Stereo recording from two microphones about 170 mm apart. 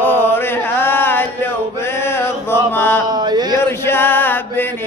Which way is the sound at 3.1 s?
25° right (ahead or behind).